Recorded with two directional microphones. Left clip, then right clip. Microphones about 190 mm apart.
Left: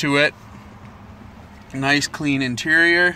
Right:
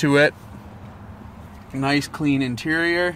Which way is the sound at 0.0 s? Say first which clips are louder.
Right 1 dB; 35° right (ahead or behind).